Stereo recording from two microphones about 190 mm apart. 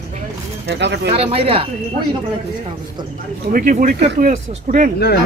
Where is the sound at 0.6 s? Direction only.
65° right (ahead or behind).